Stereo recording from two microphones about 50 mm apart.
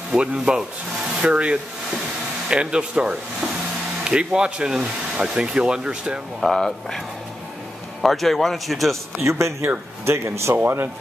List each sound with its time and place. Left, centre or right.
0.2 s speech: right
6.4 s speech: centre
8.0 s speech: centre
9.2 s speech: right
10.6 s speech: right